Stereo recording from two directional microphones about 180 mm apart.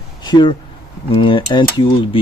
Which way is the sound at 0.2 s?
25° left (ahead or behind).